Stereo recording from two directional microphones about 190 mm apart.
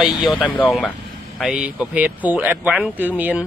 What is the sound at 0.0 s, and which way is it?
Speech, centre (ahead or behind).